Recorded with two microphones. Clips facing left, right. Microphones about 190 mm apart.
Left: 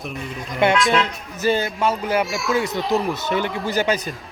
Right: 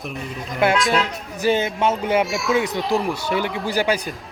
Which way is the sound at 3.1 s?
10° right (ahead or behind).